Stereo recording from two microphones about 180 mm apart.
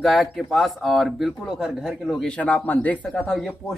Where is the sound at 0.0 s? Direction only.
Centre (ahead or behind).